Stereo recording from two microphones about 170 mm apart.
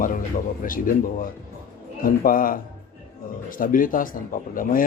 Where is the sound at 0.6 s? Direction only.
55° left (ahead or behind).